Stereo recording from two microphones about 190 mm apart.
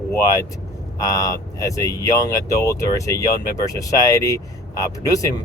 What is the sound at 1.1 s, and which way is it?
Speech, 15° left (ahead or behind).